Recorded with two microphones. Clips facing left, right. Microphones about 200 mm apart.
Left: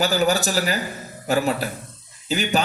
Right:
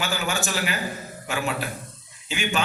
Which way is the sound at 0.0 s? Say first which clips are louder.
Left 8 dB; 40° left (ahead or behind).